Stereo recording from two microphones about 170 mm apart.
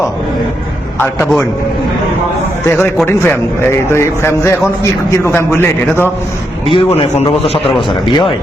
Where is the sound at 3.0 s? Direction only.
15° left (ahead or behind).